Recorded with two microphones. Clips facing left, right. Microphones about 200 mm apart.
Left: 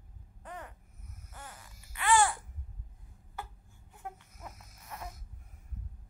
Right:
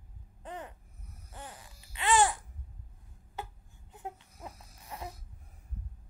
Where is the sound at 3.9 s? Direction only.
20° right (ahead or behind).